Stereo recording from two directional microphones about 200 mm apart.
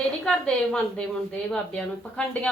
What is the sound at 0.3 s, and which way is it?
A woman's voice, 5° left (ahead or behind).